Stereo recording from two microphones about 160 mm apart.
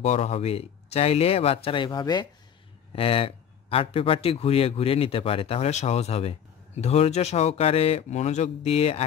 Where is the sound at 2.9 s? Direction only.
35° left (ahead or behind).